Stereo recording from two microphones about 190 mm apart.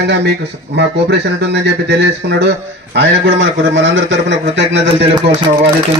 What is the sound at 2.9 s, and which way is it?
A man's voice, 75° right (ahead or behind).